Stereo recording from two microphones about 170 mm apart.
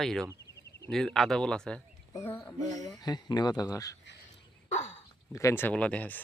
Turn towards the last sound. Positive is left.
turn(degrees=10)  # may be behind; listen again after turning